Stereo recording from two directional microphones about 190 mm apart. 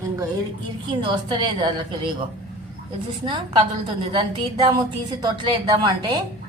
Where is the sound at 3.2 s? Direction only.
25° right (ahead or behind).